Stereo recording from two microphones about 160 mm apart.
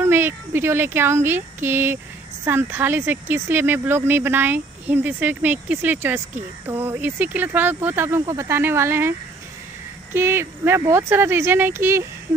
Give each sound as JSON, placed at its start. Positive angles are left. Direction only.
{"t": 0.0, "sound": "speech", "side_deg": -15}
{"t": 10.1, "sound": "speech", "side_deg": -15}